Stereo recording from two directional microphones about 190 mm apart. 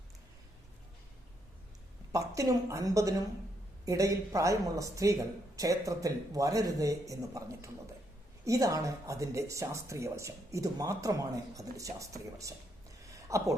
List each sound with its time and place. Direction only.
2.1 s speech: 15° right (ahead or behind)